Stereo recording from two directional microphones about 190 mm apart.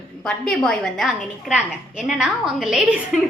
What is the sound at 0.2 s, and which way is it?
A woman's voice, 5° left (ahead or behind).